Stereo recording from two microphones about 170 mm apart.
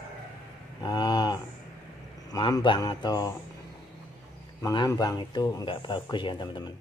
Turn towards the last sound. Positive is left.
turn(degrees=25)  # may be behind; listen again after turning